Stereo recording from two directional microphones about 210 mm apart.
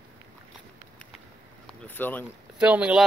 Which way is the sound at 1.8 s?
10° left (ahead or behind).